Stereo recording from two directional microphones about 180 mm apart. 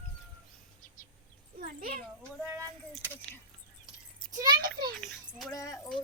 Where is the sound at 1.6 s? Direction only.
55° right (ahead or behind).